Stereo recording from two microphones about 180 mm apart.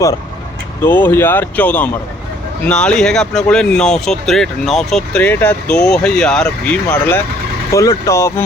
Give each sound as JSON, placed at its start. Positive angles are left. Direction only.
{"t": 0.8, "sound": "speech", "side_deg": 10}
{"t": 7.7, "sound": "speech", "side_deg": 15}